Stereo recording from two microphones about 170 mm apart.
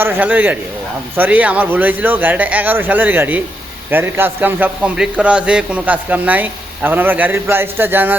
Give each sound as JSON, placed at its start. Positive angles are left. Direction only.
{"t": 0.0, "sound": "a man's voice", "side_deg": -10}